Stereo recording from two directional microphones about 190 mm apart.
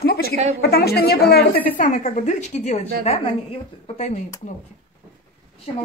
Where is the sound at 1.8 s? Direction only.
40° left (ahead or behind).